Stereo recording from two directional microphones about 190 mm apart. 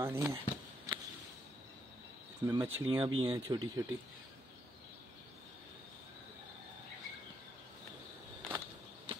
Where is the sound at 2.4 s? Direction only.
15° right (ahead or behind).